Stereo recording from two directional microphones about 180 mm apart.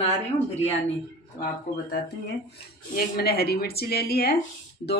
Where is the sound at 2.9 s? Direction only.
55° left (ahead or behind).